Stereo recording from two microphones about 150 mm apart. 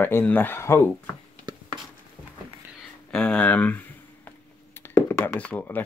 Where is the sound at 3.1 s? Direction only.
5° left (ahead or behind).